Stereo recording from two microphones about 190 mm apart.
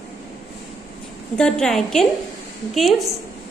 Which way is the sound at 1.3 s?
5° left (ahead or behind).